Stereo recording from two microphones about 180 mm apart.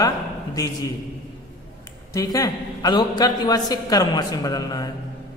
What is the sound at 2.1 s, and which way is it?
A man's voice, 20° left (ahead or behind).